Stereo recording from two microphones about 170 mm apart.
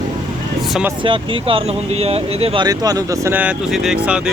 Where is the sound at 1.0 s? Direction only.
30° right (ahead or behind).